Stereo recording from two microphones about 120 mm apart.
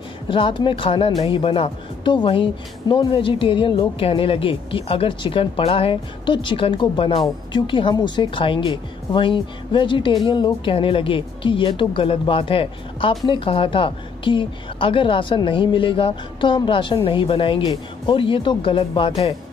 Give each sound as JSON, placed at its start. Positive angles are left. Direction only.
{"t": 0.3, "sound": "a woman's voice", "side_deg": 45}